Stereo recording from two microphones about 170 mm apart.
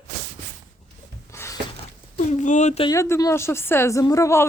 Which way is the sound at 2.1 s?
45° left (ahead or behind).